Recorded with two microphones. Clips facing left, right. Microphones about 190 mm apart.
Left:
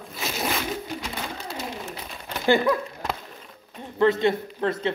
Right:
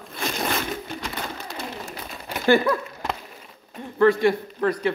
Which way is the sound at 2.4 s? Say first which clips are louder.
Right 1 dB; 15° left (ahead or behind).